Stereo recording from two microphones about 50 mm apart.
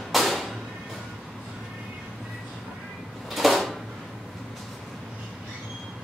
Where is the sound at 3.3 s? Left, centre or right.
Centre.